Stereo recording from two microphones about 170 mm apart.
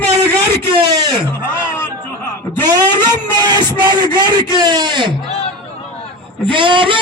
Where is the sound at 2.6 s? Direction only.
25° right (ahead or behind).